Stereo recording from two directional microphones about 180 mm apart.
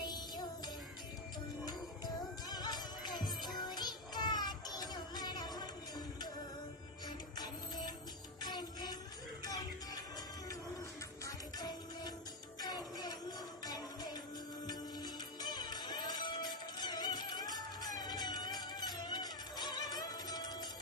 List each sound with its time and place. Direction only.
0.0 s music: 25° left (ahead or behind)
2.5 s music: 25° left (ahead or behind)
7.1 s music: 25° left (ahead or behind)
11.2 s music: 20° left (ahead or behind)